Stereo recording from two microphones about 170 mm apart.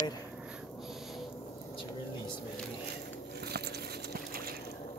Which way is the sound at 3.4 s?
70° right (ahead or behind).